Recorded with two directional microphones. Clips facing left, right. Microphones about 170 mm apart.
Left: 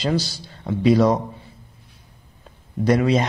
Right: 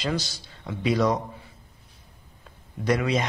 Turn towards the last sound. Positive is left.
turn(degrees=30)  # may be behind; listen again after turning